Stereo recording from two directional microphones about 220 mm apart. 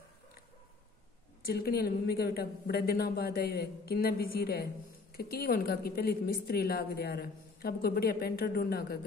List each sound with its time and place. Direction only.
1.4 s a woman's voice: 45° left (ahead or behind)